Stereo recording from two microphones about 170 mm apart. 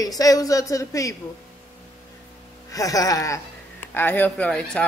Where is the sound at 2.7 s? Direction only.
20° left (ahead or behind).